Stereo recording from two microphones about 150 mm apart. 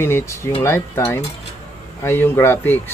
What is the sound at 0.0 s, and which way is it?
Speech, 15° left (ahead or behind).